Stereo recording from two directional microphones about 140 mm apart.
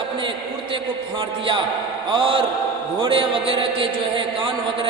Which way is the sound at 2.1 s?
40° right (ahead or behind).